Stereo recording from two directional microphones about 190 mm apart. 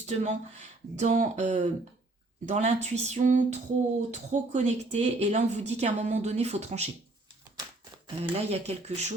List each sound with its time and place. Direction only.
0.0 s speech: 35° right (ahead or behind)
8.0 s speech: 35° right (ahead or behind)